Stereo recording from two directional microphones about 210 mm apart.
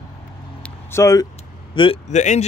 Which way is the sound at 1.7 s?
25° left (ahead or behind).